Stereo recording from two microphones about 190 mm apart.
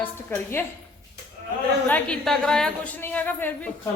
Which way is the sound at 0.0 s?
10° left (ahead or behind).